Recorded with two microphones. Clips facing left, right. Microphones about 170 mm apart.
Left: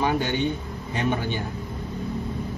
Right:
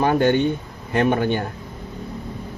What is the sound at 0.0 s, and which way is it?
Speech, 50° right (ahead or behind).